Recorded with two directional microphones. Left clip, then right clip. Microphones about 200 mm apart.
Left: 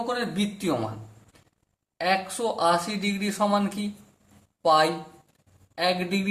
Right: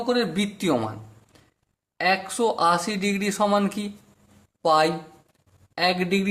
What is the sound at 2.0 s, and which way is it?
Speech, 40° right (ahead or behind).